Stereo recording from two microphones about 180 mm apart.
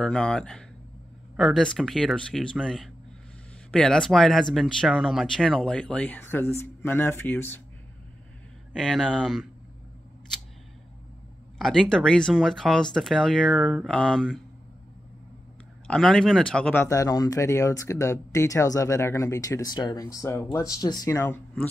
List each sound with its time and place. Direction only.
0.0 s speech: 5° left (ahead or behind)
8.7 s speech: centre (ahead or behind)
11.5 s speech: centre (ahead or behind)
15.9 s speech: 5° left (ahead or behind)